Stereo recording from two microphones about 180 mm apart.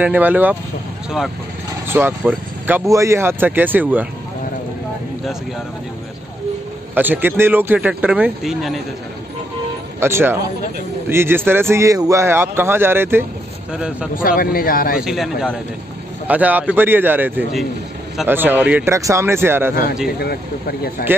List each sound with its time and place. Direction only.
0.0 s speech: 10° right (ahead or behind)
1.9 s speech: 10° right (ahead or behind)
7.0 s speech: 10° right (ahead or behind)
9.9 s speech: 15° right (ahead or behind)
14.1 s speech: 50° left (ahead or behind)
15.0 s a man's voice: centre (ahead or behind)
20.2 s speech: 60° left (ahead or behind)